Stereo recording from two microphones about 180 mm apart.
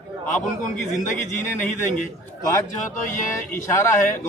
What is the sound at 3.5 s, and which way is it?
Speech, 15° left (ahead or behind).